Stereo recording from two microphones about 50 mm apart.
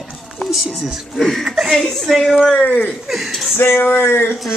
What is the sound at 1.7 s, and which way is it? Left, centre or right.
Speech, centre.